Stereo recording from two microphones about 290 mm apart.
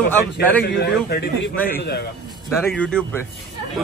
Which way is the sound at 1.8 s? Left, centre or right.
Left.